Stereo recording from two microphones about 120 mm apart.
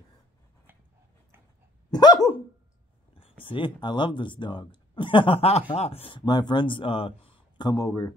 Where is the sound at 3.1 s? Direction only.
50° left (ahead or behind).